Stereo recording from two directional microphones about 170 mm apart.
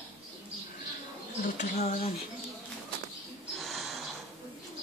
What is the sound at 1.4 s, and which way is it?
Speech, 45° left (ahead or behind).